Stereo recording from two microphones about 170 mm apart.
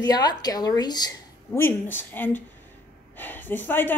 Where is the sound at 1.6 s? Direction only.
15° left (ahead or behind).